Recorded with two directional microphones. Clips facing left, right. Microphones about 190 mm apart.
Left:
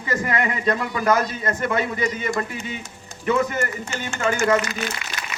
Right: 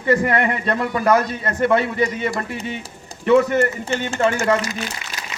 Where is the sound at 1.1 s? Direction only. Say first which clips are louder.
Right 2 dB; 35° right (ahead or behind).